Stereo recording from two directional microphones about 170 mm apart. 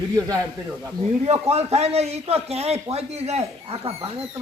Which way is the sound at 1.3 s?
40° right (ahead or behind).